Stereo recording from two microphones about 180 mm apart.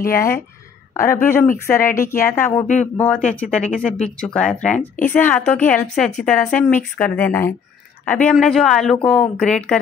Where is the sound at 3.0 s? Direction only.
5° left (ahead or behind).